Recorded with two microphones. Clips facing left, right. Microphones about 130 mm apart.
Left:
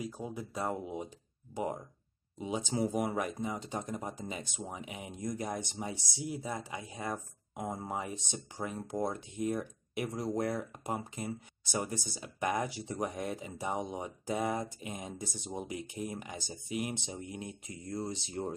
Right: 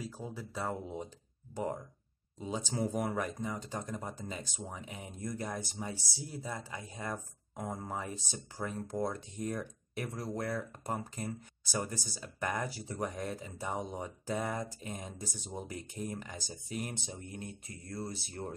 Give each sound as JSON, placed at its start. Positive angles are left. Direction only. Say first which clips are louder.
{"t": 0.0, "sound": "speech", "louder": "left 3 dB", "side_deg": 15}
{"t": 2.3, "sound": "speech", "louder": "left 2 dB", "side_deg": 15}